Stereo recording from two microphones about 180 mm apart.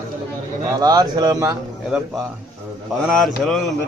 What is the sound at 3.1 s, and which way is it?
Speech, centre (ahead or behind).